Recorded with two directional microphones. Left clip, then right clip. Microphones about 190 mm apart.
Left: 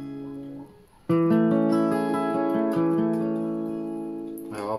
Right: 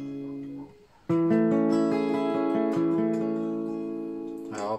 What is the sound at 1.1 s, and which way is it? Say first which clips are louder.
Music: left 2 dB; 35° left (ahead or behind).